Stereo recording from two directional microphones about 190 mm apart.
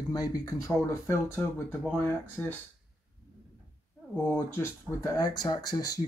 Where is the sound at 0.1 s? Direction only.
20° left (ahead or behind).